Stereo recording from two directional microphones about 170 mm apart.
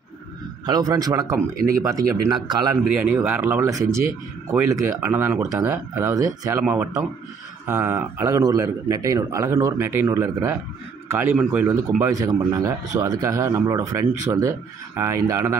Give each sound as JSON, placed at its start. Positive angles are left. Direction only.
{"t": 0.7, "sound": "speech", "side_deg": -20}
{"t": 3.0, "sound": "speech", "side_deg": -10}
{"t": 6.6, "sound": "speech", "side_deg": -10}